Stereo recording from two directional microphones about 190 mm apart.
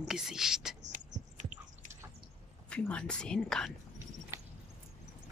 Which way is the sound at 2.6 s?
5° left (ahead or behind).